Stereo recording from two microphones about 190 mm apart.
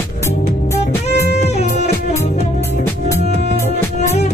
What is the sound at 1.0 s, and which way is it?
Music, 35° left (ahead or behind).